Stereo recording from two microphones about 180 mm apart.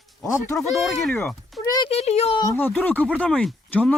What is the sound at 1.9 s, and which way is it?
Speech, 35° left (ahead or behind).